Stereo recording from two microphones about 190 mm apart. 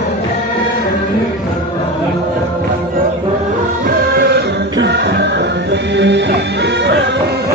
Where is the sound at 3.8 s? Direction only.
60° right (ahead or behind).